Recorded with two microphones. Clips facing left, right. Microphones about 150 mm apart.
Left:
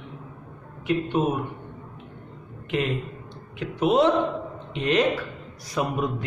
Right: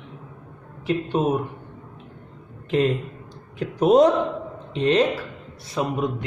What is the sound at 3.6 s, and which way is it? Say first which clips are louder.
Speech: right 5 dB; 40° right (ahead or behind).